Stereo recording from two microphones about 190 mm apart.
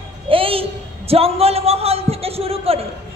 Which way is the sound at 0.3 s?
30° right (ahead or behind).